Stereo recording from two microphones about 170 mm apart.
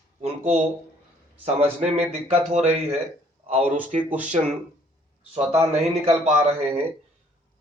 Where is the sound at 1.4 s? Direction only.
35° right (ahead or behind).